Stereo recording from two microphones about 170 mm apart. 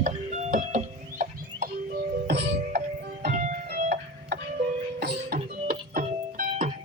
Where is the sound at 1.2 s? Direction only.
60° right (ahead or behind).